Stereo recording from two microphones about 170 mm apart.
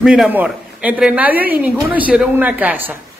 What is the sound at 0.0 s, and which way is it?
A woman's voice, 5° right (ahead or behind).